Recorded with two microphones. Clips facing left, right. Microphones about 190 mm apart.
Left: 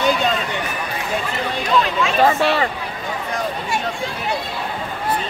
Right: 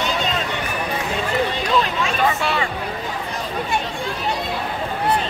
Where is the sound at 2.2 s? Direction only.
35° left (ahead or behind).